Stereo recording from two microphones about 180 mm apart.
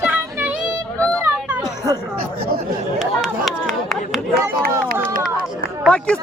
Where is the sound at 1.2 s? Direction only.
10° right (ahead or behind).